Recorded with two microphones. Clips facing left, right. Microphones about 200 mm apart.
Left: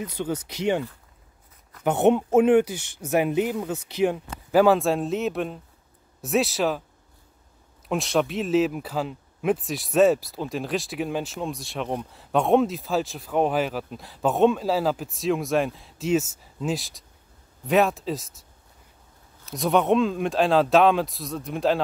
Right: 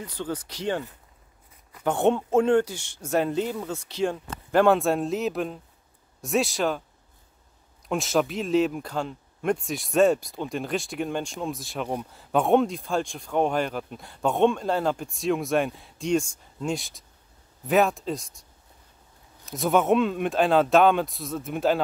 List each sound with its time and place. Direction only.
0.0 s speech: 20° left (ahead or behind)
1.9 s speech: 20° left (ahead or behind); by 6.8 s centre (ahead or behind)
7.9 s speech: centre (ahead or behind)
19.4 s speech: centre (ahead or behind)